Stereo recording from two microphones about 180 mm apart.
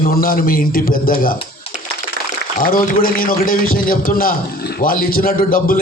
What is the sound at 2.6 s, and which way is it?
A man's voice, 50° left (ahead or behind).